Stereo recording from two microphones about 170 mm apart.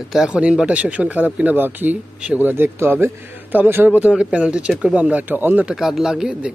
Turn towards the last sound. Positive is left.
turn(degrees=-5)  # may be behind; listen again after turning